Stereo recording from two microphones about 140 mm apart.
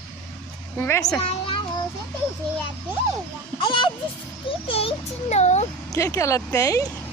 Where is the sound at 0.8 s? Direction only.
20° left (ahead or behind).